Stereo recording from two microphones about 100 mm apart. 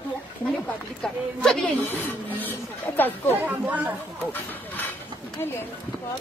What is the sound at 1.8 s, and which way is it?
Speech, 20° left (ahead or behind).